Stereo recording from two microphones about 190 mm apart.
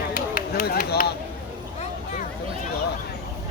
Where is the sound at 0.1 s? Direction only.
45° left (ahead or behind).